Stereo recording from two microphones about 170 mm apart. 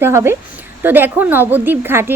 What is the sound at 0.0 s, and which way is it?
A woman's voice, 15° right (ahead or behind).